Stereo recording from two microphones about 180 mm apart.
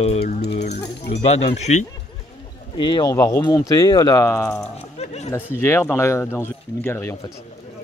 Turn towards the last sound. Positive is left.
turn(degrees=15)  # may be behind; listen again after turning